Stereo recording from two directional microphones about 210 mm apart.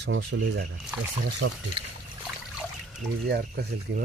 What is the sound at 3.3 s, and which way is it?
Speech, 50° right (ahead or behind).